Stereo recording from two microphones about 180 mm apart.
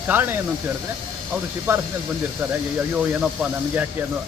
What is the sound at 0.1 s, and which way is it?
Speech, 10° right (ahead or behind).